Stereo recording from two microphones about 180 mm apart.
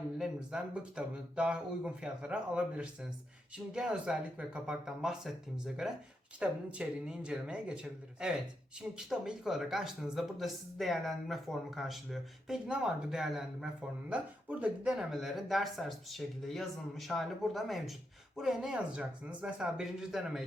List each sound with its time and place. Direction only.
0.2 s speech: 5° right (ahead or behind)